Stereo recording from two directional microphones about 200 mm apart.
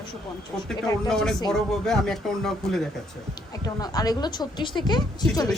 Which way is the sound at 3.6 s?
20° left (ahead or behind).